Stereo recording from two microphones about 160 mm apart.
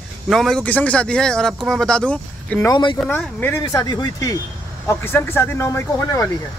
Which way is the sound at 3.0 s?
10° left (ahead or behind).